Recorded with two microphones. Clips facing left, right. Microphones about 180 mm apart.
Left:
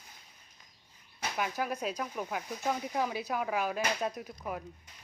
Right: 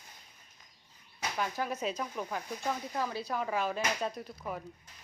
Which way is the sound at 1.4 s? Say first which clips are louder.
Left 1 dB; 5° left (ahead or behind).